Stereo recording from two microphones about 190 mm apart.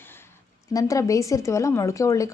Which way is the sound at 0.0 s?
10° left (ahead or behind).